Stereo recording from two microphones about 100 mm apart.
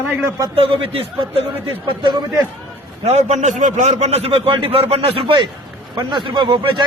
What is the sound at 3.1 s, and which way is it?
A man's voice, 90° right.